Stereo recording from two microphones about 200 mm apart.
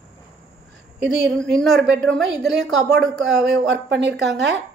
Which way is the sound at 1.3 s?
Centre (ahead or behind).